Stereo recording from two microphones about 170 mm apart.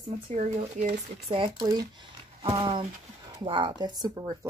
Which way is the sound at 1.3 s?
30° right (ahead or behind).